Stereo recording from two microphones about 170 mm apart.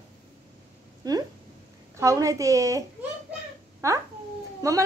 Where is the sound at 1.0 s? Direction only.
20° right (ahead or behind).